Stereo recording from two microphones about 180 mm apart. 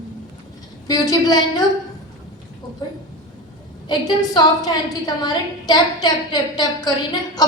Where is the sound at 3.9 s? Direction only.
20° left (ahead or behind).